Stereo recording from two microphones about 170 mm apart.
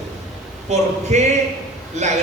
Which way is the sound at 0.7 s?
40° right (ahead or behind).